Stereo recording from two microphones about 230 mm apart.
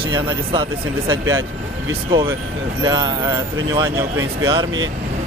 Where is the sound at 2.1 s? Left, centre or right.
Centre.